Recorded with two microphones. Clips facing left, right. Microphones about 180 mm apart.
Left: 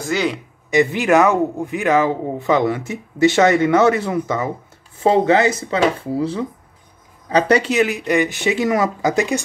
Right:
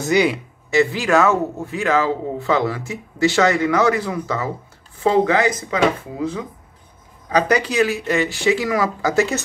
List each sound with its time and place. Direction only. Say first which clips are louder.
0.0 s speech: right 3 dB; 15° right (ahead or behind)
0.7 s a man's voice: left 2 dB; 20° left (ahead or behind)